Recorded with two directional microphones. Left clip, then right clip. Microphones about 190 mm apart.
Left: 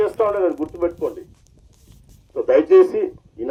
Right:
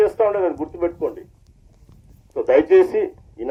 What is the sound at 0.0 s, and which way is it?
Speech, 45° left (ahead or behind).